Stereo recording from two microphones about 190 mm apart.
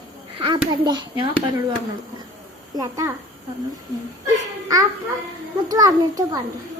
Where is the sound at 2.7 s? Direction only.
15° right (ahead or behind).